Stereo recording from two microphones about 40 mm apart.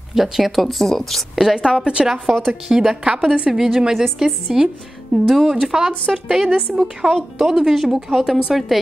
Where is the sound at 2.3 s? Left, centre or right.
Centre.